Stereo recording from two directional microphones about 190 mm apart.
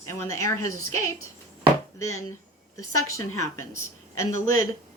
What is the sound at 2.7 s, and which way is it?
A woman's voice, 15° left (ahead or behind).